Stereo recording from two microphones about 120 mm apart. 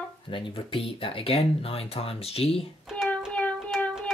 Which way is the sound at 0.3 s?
45° left (ahead or behind).